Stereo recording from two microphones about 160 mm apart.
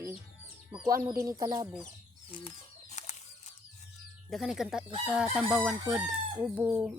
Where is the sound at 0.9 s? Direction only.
20° right (ahead or behind).